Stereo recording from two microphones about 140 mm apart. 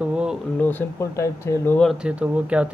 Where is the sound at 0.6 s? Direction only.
15° left (ahead or behind).